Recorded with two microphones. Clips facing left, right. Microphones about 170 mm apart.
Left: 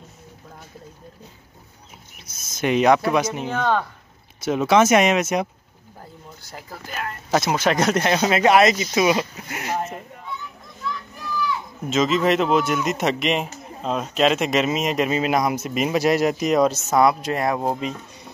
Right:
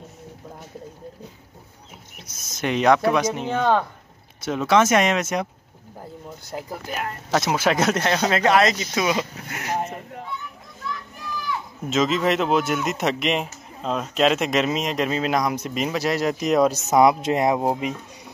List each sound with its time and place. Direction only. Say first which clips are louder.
2.5 s speech: left 2 dB; 5° left (ahead or behind)
3.4 s speech: right 2 dB; 20° right (ahead or behind)
4.5 s speech: left 2 dB; 15° left (ahead or behind)
6.7 s speech: right 1 dB; 15° right (ahead or behind)
7.2 s speech: left 1 dB; centre (ahead or behind)
8.0 s speech: left 2 dB; 10° left (ahead or behind)
11.9 s speech: left 2 dB; centre (ahead or behind)
16.7 s speech: right 1 dB; 15° right (ahead or behind)